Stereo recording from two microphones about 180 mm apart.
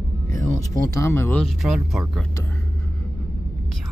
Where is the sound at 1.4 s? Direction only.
Centre (ahead or behind).